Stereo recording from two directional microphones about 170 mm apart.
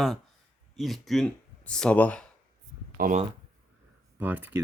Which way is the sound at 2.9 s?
55° right (ahead or behind).